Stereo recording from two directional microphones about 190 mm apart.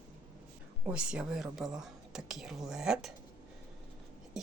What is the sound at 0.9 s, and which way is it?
Speech, 5° right (ahead or behind).